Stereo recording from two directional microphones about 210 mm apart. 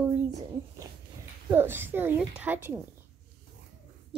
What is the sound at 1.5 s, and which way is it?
A woman's voice, 10° right (ahead or behind).